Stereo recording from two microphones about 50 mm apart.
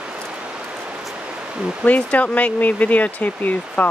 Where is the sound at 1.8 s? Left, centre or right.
Left.